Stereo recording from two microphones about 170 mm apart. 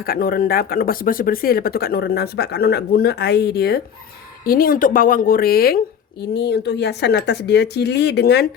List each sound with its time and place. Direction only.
0.0 s speech: 60° left (ahead or behind)
6.3 s speech: 75° left (ahead or behind)